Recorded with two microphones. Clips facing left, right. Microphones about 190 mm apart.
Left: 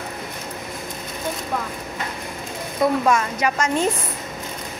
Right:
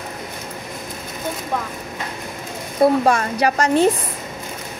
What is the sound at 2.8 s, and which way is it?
Speech, 30° right (ahead or behind).